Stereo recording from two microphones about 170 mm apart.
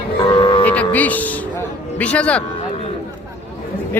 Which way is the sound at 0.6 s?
10° left (ahead or behind).